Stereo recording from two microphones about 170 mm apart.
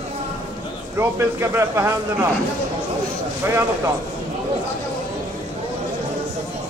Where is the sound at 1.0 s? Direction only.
15° right (ahead or behind).